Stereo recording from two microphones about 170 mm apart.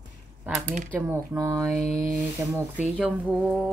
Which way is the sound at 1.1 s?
15° right (ahead or behind).